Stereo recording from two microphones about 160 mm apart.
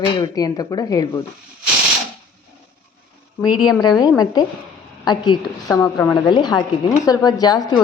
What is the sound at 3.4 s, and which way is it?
A woman's voice, 25° left (ahead or behind).